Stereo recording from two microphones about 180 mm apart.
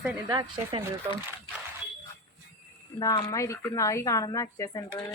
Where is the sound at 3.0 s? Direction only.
20° left (ahead or behind).